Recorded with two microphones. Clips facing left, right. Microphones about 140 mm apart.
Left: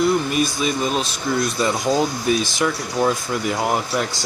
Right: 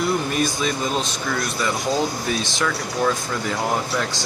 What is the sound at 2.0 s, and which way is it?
Speech, 15° left (ahead or behind).